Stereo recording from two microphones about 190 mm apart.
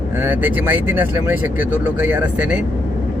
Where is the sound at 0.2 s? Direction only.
10° right (ahead or behind).